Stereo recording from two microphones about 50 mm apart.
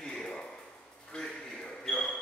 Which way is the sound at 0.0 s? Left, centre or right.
Centre.